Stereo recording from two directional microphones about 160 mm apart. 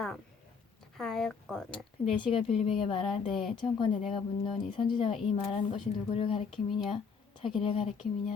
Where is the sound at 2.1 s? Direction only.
35° left (ahead or behind).